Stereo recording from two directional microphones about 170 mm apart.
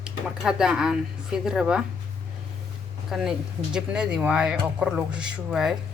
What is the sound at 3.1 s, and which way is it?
Speech, centre (ahead or behind).